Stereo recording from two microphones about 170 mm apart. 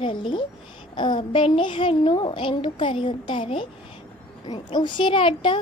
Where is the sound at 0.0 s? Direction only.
30° left (ahead or behind).